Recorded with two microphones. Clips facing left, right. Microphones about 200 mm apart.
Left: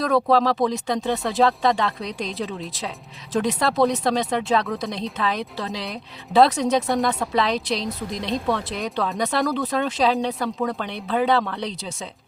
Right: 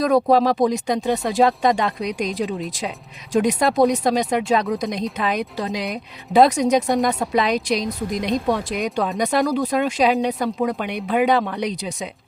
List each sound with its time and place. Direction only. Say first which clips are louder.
0.0 s speech: right 3 dB; 15° right (ahead or behind)